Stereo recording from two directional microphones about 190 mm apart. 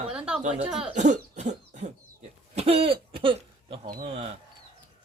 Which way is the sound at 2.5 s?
30° right (ahead or behind).